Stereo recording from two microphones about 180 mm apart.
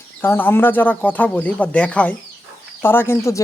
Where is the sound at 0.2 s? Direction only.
10° left (ahead or behind).